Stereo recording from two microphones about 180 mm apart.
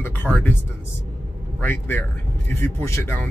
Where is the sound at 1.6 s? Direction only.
10° left (ahead or behind).